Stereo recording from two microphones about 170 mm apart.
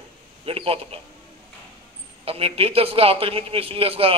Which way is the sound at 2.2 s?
35° right (ahead or behind).